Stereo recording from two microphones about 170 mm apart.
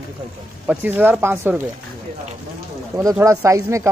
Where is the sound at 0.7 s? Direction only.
10° right (ahead or behind).